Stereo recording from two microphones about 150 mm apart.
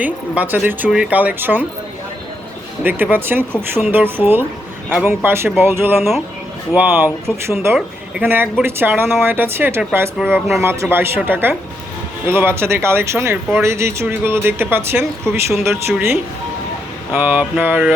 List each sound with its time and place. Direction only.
0.0 s speech: 10° right (ahead or behind)
2.8 s speech: 15° right (ahead or behind)
6.0 s speech: centre (ahead or behind)
6.7 s speech: 10° right (ahead or behind)